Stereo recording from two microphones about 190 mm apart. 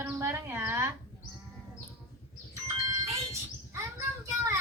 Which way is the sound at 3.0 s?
15° right (ahead or behind).